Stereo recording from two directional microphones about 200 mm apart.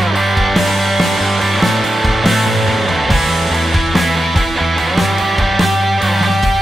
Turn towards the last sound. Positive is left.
turn(degrees=0)  # may be behind; listen again after turning